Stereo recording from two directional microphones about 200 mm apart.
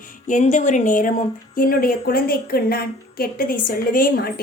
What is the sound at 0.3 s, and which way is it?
A woman's voice, 40° left (ahead or behind).